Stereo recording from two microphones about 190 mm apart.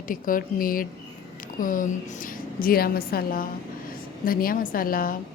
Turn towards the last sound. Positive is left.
turn(degrees=50)  # may be behind; listen again after turning